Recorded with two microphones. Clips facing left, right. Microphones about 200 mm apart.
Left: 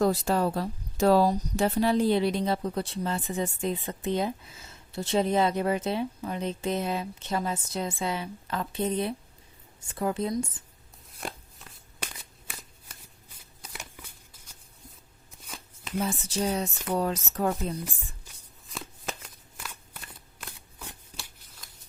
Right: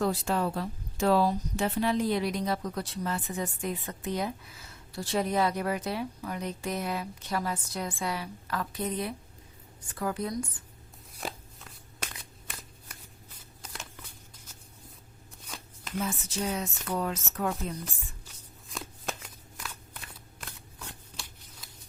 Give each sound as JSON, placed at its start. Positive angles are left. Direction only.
{"t": 0.0, "sound": "speech", "side_deg": 40}
{"t": 11.1, "sound": "a sound", "side_deg": 0}
{"t": 15.4, "sound": "shuffling cards", "side_deg": 0}
{"t": 16.0, "sound": "speech", "side_deg": 35}
{"t": 18.3, "sound": "shuffling cards", "side_deg": 0}
{"t": 21.6, "sound": "scissors", "side_deg": -5}